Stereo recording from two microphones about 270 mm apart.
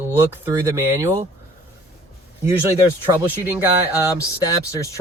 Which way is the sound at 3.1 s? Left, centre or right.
Centre.